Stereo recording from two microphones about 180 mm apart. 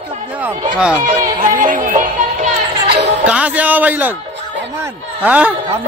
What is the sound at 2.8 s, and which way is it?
Music, 70° right (ahead or behind).